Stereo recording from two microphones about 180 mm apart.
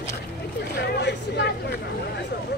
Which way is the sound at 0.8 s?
70° left (ahead or behind).